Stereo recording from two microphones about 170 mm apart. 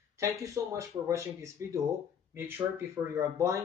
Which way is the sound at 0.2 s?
20° right (ahead or behind).